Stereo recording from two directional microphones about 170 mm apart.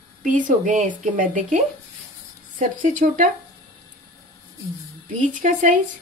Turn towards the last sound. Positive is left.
turn(degrees=-45)  # may be behind; listen again after turning